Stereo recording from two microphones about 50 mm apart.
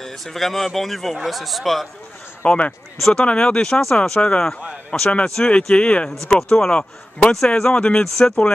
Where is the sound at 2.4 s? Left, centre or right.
Left.